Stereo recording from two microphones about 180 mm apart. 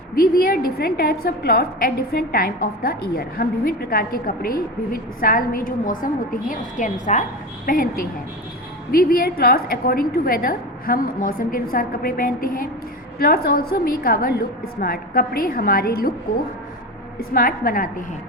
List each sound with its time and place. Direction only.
0.2 s a woman's voice: 55° left (ahead or behind)
17.2 s a woman's voice: 55° left (ahead or behind)